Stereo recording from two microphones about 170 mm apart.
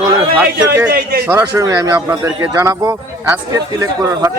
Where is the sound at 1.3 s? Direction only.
15° right (ahead or behind).